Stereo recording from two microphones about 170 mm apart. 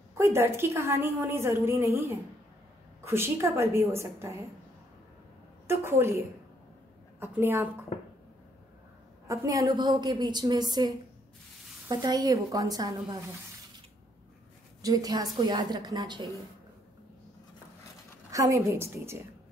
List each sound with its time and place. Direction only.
0.2 s a woman's voice: 15° right (ahead or behind)
5.7 s a woman's voice: 15° right (ahead or behind)
7.2 s a woman's voice: 15° right (ahead or behind)
9.3 s a woman's voice: 20° right (ahead or behind)
14.8 s a woman's voice: 20° right (ahead or behind)
18.3 s a woman's voice: 20° right (ahead or behind)